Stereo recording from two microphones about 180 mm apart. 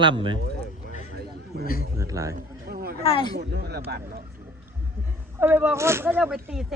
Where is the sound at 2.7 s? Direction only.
60° right (ahead or behind).